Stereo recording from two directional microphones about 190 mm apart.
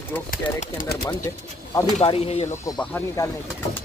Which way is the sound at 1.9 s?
30° left (ahead or behind).